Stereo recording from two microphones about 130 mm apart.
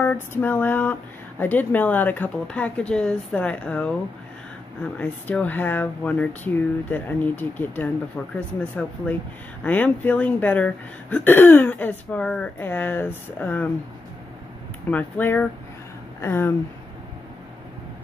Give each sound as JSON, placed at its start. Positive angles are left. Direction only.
{"t": 0.0, "sound": "speech", "side_deg": 15}
{"t": 4.9, "sound": "speech", "side_deg": 15}
{"t": 9.6, "sound": "speech", "side_deg": 15}
{"t": 14.9, "sound": "speech", "side_deg": 15}